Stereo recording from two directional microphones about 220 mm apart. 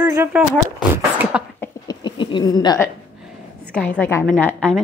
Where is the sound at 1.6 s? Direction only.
20° left (ahead or behind).